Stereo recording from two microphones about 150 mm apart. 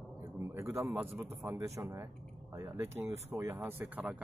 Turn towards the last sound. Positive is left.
turn(degrees=-10)  # may be behind; listen again after turning